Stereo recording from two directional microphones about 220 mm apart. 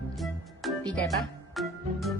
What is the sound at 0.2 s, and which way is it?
Music, centre (ahead or behind).